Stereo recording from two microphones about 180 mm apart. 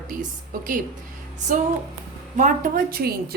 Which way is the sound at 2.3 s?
45° right (ahead or behind).